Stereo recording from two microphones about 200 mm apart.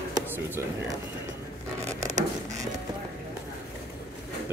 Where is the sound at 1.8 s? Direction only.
35° right (ahead or behind).